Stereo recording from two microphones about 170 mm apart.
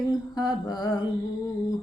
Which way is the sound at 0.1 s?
25° left (ahead or behind).